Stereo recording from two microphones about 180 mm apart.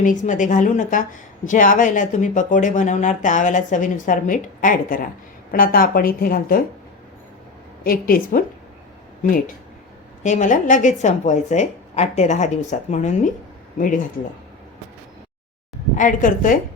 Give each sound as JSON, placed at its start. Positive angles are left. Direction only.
{"t": 0.0, "sound": "speech", "side_deg": 45}
{"t": 7.9, "sound": "speech", "side_deg": 50}
{"t": 10.2, "sound": "speech", "side_deg": 45}
{"t": 16.0, "sound": "speech", "side_deg": 45}